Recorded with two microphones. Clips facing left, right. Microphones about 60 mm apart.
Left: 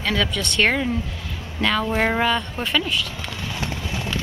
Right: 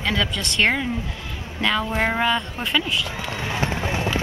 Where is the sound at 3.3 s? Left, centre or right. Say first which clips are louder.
Right 4 dB; right.